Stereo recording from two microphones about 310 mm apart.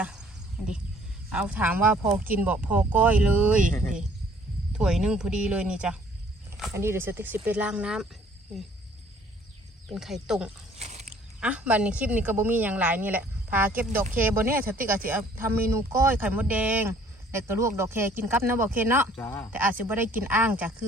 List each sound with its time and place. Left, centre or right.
0.0 s a sound: centre
1.3 s a woman's voice: centre
4.7 s a woman's voice: centre
9.9 s a woman's voice: centre
10.8 s a sound: right
11.3 s a woman's voice: centre
19.2 s a woman's voice: centre
19.8 s a woman's voice: centre